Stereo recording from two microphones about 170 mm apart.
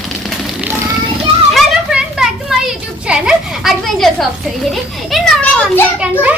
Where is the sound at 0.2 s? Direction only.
Centre (ahead or behind).